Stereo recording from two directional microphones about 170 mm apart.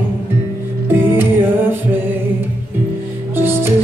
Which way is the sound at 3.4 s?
15° right (ahead or behind).